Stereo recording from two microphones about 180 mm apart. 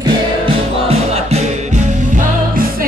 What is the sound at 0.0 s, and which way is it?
Music, 30° right (ahead or behind).